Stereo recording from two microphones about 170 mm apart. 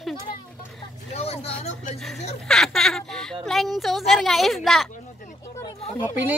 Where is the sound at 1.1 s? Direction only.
35° left (ahead or behind).